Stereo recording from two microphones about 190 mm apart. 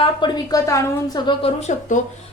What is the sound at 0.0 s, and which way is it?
A woman's voice, 20° left (ahead or behind).